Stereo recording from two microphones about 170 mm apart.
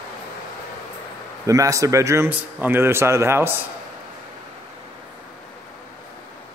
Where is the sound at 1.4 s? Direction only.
20° right (ahead or behind).